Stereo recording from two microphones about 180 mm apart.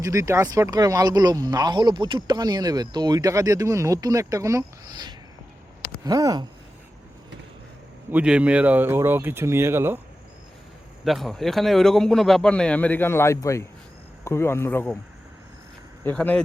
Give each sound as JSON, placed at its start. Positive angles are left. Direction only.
{"t": 0.0, "sound": "speech", "side_deg": -15}
{"t": 8.1, "sound": "speech", "side_deg": -5}
{"t": 11.0, "sound": "speech", "side_deg": 0}
{"t": 16.0, "sound": "speech", "side_deg": 10}